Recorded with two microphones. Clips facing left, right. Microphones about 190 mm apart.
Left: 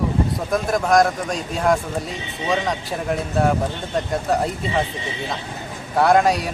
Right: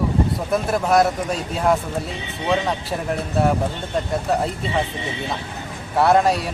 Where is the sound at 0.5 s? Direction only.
5° right (ahead or behind).